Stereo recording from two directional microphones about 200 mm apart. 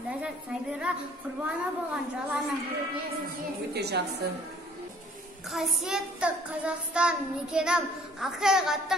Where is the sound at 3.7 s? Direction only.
55° right (ahead or behind).